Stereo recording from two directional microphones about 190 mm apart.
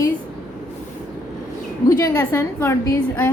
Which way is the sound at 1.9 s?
15° left (ahead or behind).